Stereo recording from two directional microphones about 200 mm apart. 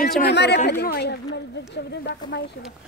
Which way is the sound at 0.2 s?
55° left (ahead or behind).